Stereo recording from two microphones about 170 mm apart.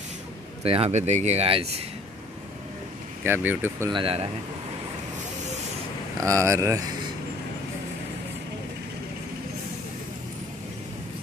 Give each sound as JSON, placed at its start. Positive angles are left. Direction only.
{"t": 0.7, "sound": "speech", "side_deg": -35}
{"t": 3.3, "sound": "speech", "side_deg": -10}
{"t": 3.9, "sound": "speech", "side_deg": -35}
{"t": 6.2, "sound": "speech", "side_deg": -15}